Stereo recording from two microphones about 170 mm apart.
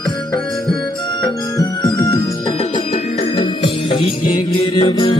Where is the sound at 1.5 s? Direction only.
20° left (ahead or behind).